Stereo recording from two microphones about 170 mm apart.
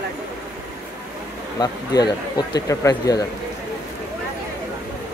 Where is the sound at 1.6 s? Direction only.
25° left (ahead or behind).